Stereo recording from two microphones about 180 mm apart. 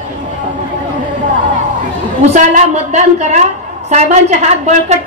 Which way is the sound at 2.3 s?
45° right (ahead or behind).